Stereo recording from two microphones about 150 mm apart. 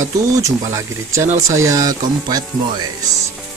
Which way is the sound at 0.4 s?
20° right (ahead or behind).